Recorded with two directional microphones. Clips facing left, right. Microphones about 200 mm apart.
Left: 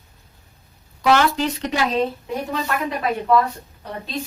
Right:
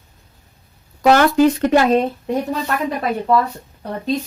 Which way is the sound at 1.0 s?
45° right (ahead or behind).